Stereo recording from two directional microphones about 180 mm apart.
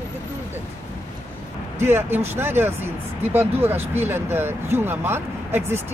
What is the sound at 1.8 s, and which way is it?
Speech, 15° right (ahead or behind).